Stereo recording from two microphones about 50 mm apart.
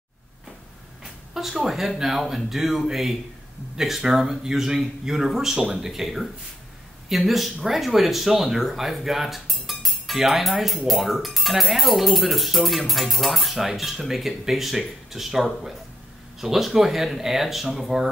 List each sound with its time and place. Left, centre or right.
1.3 s speech: centre